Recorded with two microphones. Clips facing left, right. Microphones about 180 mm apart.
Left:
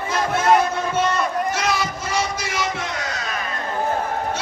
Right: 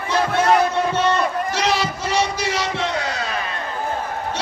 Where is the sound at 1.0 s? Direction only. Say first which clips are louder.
Right 2 dB; 30° right (ahead or behind).